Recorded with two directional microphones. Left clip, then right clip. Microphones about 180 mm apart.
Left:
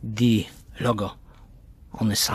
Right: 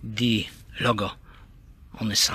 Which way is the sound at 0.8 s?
15° left (ahead or behind).